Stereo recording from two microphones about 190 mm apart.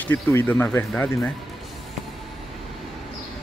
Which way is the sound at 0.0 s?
10° left (ahead or behind).